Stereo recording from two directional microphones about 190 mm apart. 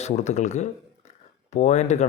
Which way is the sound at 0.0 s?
35° left (ahead or behind).